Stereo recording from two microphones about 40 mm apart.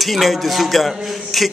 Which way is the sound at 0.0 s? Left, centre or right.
Centre.